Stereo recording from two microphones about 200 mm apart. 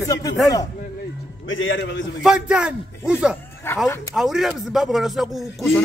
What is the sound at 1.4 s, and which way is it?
Speech, 70° left (ahead or behind).